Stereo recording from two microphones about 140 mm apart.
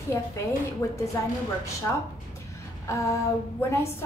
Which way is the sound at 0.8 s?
20° left (ahead or behind).